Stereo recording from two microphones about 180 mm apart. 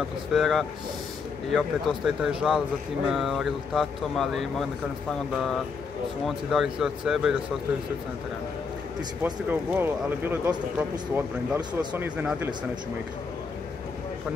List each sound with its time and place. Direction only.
0.3 s speech: centre (ahead or behind)
6.2 s speech: centre (ahead or behind)
9.2 s speech: 10° right (ahead or behind)